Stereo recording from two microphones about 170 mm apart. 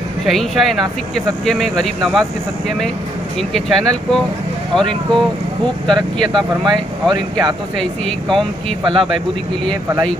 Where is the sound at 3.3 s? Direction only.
5° left (ahead or behind).